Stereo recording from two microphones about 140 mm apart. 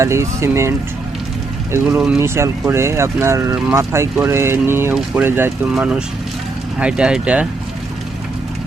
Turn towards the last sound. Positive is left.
turn(degrees=-5)  # may be behind; listen again after turning